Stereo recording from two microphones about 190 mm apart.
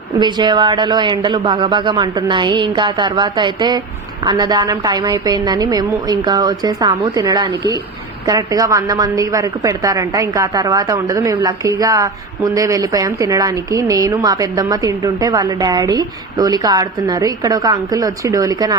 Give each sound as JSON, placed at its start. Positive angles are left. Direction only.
{"t": 0.2, "sound": "a woman's voice", "side_deg": -25}